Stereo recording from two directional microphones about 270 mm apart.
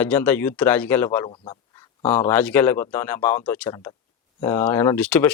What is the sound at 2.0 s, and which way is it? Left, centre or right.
Speech, centre.